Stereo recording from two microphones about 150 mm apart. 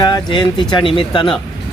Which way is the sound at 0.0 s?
30° left (ahead or behind).